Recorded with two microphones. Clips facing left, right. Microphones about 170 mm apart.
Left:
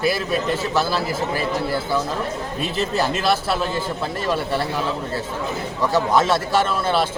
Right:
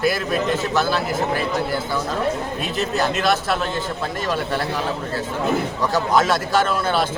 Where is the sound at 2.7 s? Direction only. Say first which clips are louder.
Even; 30° left (ahead or behind).